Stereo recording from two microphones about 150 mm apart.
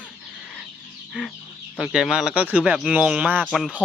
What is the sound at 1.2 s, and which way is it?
Speech, 5° right (ahead or behind).